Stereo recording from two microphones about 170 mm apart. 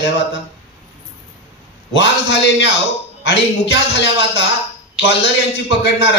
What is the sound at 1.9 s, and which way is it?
A man's voice, 90° left.